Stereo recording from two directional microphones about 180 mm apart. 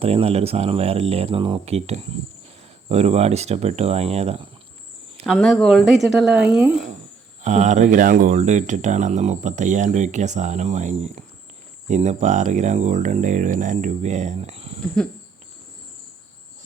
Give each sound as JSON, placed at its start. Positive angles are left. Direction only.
{"t": 0.0, "sound": "speech", "side_deg": -35}
{"t": 5.2, "sound": "speech", "side_deg": 0}
{"t": 7.4, "sound": "speech", "side_deg": -40}